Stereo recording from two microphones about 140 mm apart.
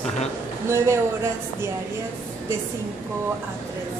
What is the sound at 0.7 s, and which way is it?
Speech, 20° right (ahead or behind).